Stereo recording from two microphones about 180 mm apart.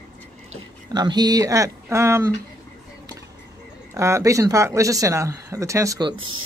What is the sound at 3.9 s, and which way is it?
Speech, 15° right (ahead or behind).